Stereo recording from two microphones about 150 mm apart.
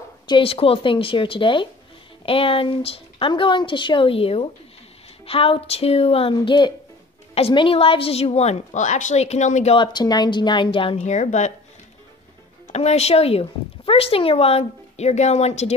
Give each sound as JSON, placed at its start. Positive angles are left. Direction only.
{"t": 0.3, "sound": "speech", "side_deg": 40}
{"t": 9.8, "sound": "speech", "side_deg": 30}
{"t": 11.0, "sound": "speech", "side_deg": 55}
{"t": 12.6, "sound": "speech", "side_deg": 45}